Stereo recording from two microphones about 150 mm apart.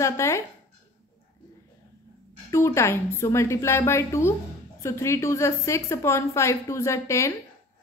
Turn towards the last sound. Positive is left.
turn(degrees=20)  # may be behind; listen again after turning